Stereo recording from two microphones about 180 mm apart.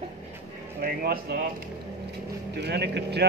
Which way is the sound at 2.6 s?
65° right (ahead or behind).